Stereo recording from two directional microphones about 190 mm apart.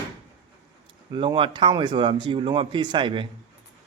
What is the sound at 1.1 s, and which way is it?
Speech, 25° right (ahead or behind).